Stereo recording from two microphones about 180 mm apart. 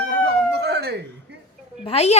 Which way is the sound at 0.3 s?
65° right (ahead or behind).